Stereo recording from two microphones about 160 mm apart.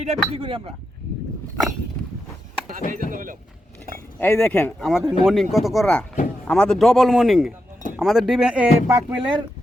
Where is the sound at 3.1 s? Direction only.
55° right (ahead or behind).